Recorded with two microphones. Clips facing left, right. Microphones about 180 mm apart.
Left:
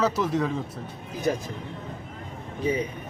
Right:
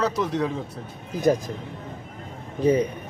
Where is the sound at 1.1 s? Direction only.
40° right (ahead or behind).